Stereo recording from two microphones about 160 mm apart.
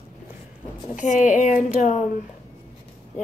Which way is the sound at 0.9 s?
50° left (ahead or behind).